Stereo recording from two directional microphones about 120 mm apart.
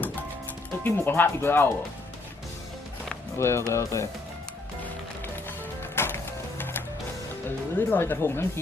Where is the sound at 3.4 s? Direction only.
20° left (ahead or behind).